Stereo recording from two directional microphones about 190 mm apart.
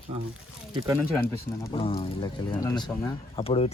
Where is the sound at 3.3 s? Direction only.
30° left (ahead or behind).